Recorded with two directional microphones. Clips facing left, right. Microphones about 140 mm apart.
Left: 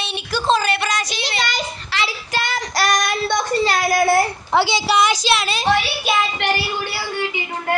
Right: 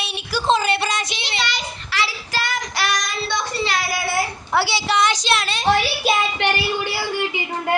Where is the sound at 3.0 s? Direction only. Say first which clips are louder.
Left 5 dB; 55° left (ahead or behind).